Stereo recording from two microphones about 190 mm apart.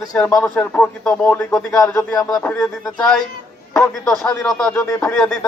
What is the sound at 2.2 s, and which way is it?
A man's voice, 5° left (ahead or behind).